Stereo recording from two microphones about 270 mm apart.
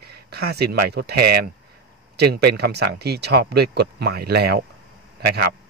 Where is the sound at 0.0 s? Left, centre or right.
Right.